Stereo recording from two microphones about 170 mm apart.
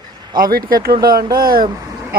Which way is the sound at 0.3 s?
55° right (ahead or behind).